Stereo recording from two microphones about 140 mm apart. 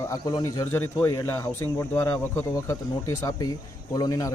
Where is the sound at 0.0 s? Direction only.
25° left (ahead or behind).